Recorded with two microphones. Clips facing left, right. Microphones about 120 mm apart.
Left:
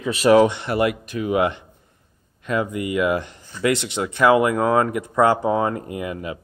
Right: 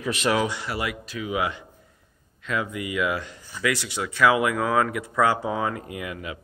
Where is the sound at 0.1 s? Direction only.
35° left (ahead or behind).